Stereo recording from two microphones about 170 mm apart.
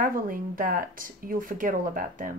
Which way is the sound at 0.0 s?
55° right (ahead or behind).